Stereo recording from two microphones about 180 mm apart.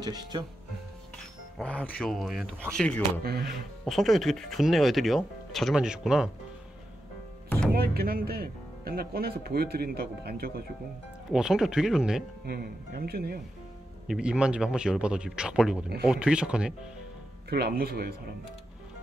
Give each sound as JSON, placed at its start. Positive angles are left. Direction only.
{"t": 0.0, "sound": "speech", "side_deg": -25}
{"t": 1.6, "sound": "speech", "side_deg": 5}
{"t": 3.3, "sound": "speech", "side_deg": -60}
{"t": 3.8, "sound": "speech", "side_deg": 0}
{"t": 7.4, "sound": "music", "side_deg": 10}
{"t": 7.7, "sound": "speech", "side_deg": -60}
{"t": 11.2, "sound": "speech", "side_deg": -5}
{"t": 12.4, "sound": "speech", "side_deg": -60}
{"t": 14.0, "sound": "speech", "side_deg": -5}
{"t": 17.5, "sound": "speech", "side_deg": -65}